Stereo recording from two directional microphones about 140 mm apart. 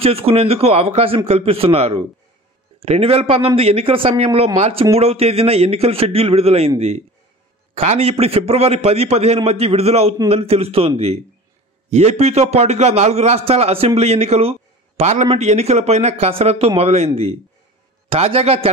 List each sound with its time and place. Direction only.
0.0 s a man's voice: 45° right (ahead or behind)
7.7 s a man's voice: 45° right (ahead or behind)
11.9 s a man's voice: 50° right (ahead or behind)